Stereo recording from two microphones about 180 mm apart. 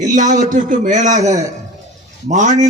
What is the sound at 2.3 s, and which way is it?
Speech, 45° right (ahead or behind).